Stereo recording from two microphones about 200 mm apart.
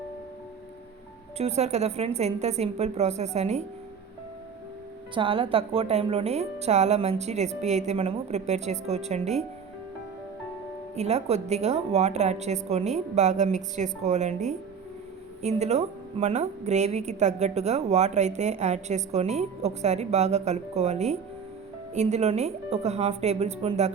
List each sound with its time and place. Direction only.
1.4 s a woman's voice: 35° right (ahead or behind)
5.1 s a woman's voice: 25° right (ahead or behind)
10.9 s a woman's voice: 30° right (ahead or behind)